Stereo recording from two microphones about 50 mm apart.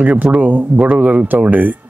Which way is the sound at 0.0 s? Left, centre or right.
Right.